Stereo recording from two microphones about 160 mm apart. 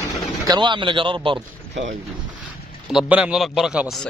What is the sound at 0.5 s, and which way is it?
Speech, 30° right (ahead or behind).